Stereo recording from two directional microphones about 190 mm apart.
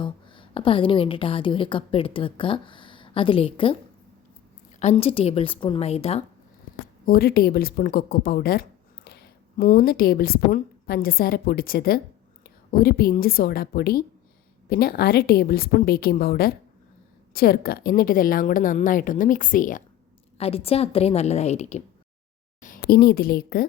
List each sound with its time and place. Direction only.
0.0 s a woman's voice: 25° left (ahead or behind)
4.8 s a woman's voice: 35° left (ahead or behind)
7.0 s a woman's voice: 50° left (ahead or behind)
20.4 s a woman's voice: 30° left (ahead or behind)
22.6 s a woman's voice: 50° left (ahead or behind)